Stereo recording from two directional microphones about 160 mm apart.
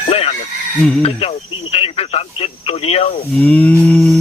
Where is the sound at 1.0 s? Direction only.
40° left (ahead or behind).